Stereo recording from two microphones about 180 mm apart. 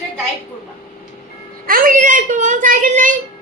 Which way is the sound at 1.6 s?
50° right (ahead or behind).